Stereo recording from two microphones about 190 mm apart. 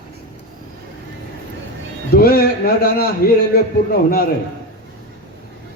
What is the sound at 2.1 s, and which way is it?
Speech, 55° left (ahead or behind).